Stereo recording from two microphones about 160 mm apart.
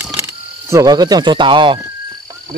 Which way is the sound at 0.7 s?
20° right (ahead or behind).